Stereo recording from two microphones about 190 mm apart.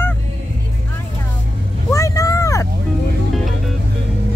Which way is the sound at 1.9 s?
15° left (ahead or behind).